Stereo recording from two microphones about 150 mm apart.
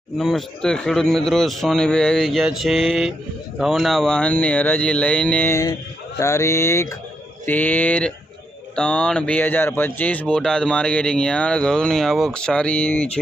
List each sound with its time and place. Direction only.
0.2 s a man's voice: 5° left (ahead or behind)